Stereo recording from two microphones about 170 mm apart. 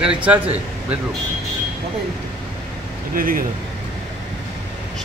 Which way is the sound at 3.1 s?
55° right (ahead or behind).